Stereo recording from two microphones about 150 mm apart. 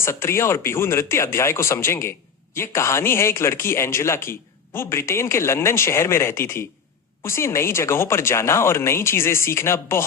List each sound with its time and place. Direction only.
0.0 s a man's voice: 15° left (ahead or behind)